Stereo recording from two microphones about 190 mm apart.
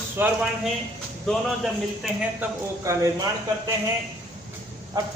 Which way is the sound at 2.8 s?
15° right (ahead or behind).